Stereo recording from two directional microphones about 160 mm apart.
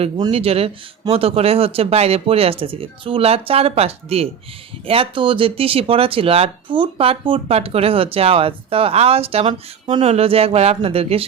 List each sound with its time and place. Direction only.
0.3 s speech: 35° right (ahead or behind)